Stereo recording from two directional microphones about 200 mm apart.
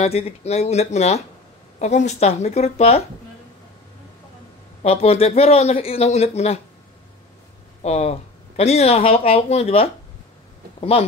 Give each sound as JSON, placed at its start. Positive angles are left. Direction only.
{"t": 0.0, "sound": "speech", "side_deg": 30}
{"t": 4.8, "sound": "speech", "side_deg": 30}
{"t": 7.8, "sound": "speech", "side_deg": 35}